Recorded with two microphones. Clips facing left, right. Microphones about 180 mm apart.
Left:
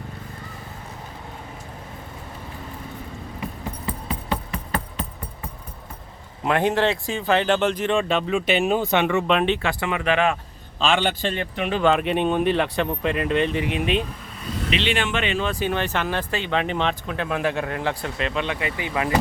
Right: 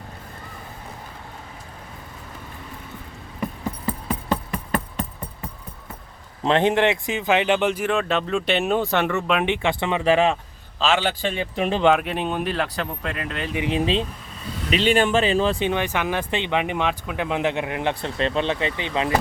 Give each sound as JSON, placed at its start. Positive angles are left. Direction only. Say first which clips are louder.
{"t": 3.8, "sound": "music", "louder": "right 3 dB", "side_deg": -45}
{"t": 6.4, "sound": "speech", "louder": "right 2 dB", "side_deg": -25}
{"t": 9.5, "sound": "speech", "louder": "right 1 dB", "side_deg": -20}
{"t": 10.8, "sound": "speech", "louder": "even", "side_deg": -5}
{"t": 11.5, "sound": "speech", "louder": "right 4 dB", "side_deg": -35}
{"t": 11.9, "sound": "speech", "louder": "left 4 dB", "side_deg": 0}
{"t": 13.7, "sound": "speech", "louder": "right 1 dB", "side_deg": -30}
{"t": 14.7, "sound": "speech", "louder": "right 6 dB", "side_deg": -40}
{"t": 15.5, "sound": "speech", "louder": "right 1 dB", "side_deg": -20}
{"t": 18.2, "sound": "speech", "louder": "right 5 dB", "side_deg": -30}